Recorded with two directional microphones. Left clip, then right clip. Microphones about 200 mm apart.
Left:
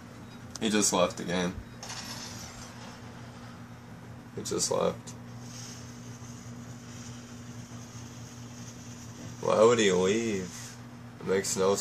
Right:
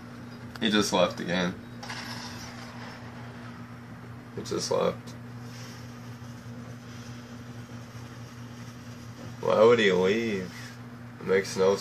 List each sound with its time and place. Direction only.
0.6 s speech: 10° left (ahead or behind)
4.6 s speech: 15° left (ahead or behind)
9.4 s speech: 20° left (ahead or behind)